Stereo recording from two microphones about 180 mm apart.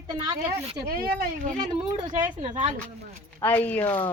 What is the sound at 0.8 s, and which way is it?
Speech, 55° right (ahead or behind).